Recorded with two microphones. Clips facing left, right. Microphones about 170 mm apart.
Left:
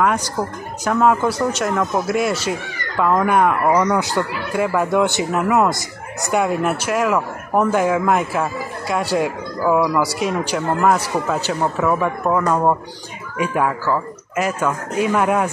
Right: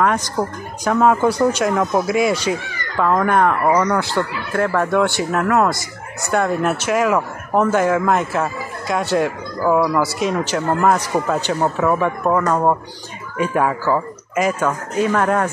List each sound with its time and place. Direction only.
0.0 s speech: 10° left (ahead or behind)
3.9 s speech: 15° left (ahead or behind)